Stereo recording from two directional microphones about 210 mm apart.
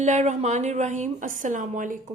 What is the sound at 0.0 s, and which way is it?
A woman's voice, 35° right (ahead or behind).